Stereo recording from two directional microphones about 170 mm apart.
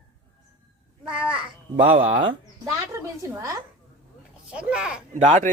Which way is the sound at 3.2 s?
15° right (ahead or behind).